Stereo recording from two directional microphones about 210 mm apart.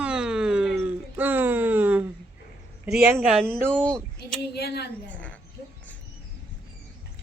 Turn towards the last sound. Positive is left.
turn(degrees=5)  # may be behind; listen again after turning